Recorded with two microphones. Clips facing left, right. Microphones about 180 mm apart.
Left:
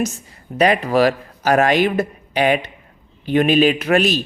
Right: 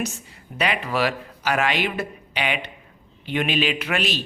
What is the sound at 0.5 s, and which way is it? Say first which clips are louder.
Speech: left 9 dB; 40° left (ahead or behind).